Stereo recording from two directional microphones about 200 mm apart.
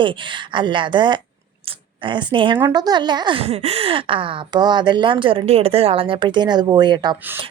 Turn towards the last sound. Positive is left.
turn(degrees=-20)  # may be behind; listen again after turning